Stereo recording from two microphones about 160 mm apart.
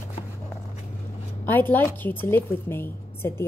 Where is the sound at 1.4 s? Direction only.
10° left (ahead or behind).